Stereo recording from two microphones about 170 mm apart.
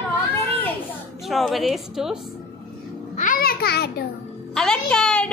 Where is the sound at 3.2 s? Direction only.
55° left (ahead or behind).